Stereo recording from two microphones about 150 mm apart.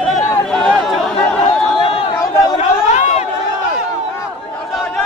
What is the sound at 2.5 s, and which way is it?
Chatter, 50° left (ahead or behind).